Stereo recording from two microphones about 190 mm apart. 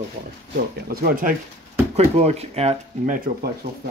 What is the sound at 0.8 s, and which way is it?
Speech, 50° right (ahead or behind).